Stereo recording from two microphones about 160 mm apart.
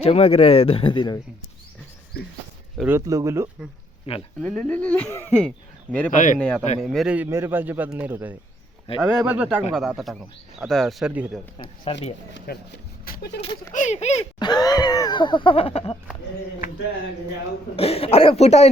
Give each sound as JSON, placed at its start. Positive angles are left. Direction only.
{"t": 0.0, "sound": "speech", "side_deg": 40}
{"t": 2.8, "sound": "a man's voice", "side_deg": -15}
{"t": 4.4, "sound": "speech", "side_deg": 5}
{"t": 6.1, "sound": "speech", "side_deg": 50}
{"t": 6.7, "sound": "a man's voice", "side_deg": 0}
{"t": 11.1, "sound": "a man's voice", "side_deg": -10}
{"t": 11.9, "sound": "speech", "side_deg": 35}
{"t": 12.5, "sound": "speech", "side_deg": 75}
{"t": 13.1, "sound": "speech", "side_deg": 90}
{"t": 13.4, "sound": "speech", "side_deg": 30}
{"t": 13.7, "sound": "speech", "side_deg": 45}
{"t": 14.3, "sound": "a sound", "side_deg": 25}
{"t": 17.7, "sound": "speech", "side_deg": 40}